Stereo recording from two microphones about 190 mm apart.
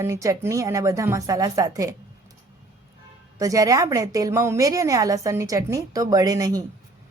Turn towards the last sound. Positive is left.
turn(degrees=-20)  # may be behind; listen again after turning